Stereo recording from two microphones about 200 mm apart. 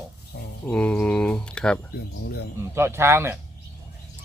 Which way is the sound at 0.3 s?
50° left (ahead or behind).